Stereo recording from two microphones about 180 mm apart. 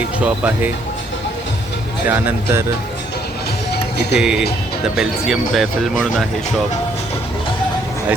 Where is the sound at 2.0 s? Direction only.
10° right (ahead or behind).